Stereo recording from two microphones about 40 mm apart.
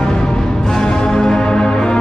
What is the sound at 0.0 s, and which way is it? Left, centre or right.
Music, centre.